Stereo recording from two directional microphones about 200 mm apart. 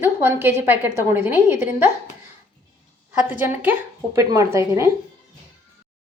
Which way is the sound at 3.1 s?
10° right (ahead or behind).